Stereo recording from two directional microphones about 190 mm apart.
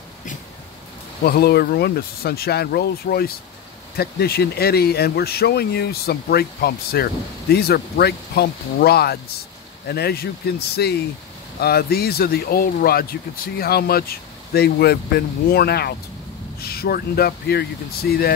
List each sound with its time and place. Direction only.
1.2 s speech: 55° left (ahead or behind)